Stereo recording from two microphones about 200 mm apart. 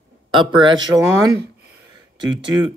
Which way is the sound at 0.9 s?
20° right (ahead or behind).